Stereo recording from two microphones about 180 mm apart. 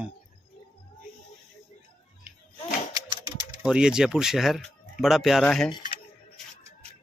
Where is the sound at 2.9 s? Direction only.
25° right (ahead or behind).